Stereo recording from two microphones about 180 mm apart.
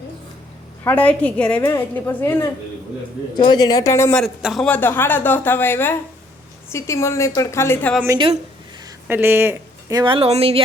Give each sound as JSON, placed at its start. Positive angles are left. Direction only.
{"t": 0.9, "sound": "speech", "side_deg": 10}
{"t": 4.2, "sound": "speech", "side_deg": 0}
{"t": 9.0, "sound": "speech", "side_deg": -10}
{"t": 10.0, "sound": "speech", "side_deg": -30}